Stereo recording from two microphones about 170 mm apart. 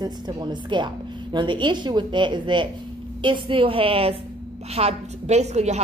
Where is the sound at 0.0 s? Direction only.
25° right (ahead or behind).